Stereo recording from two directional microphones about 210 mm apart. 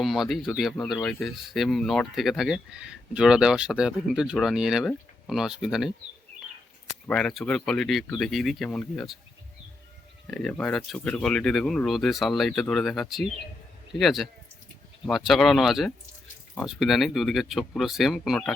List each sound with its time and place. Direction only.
0.0 s speech: centre (ahead or behind)
7.1 s speech: 5° left (ahead or behind)
10.3 s speech: 5° left (ahead or behind)